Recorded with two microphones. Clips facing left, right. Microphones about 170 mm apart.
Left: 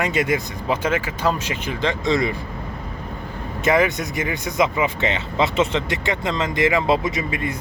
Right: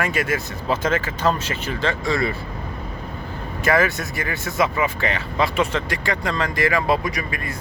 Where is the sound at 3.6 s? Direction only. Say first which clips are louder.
Left 1 dB; 20° left (ahead or behind).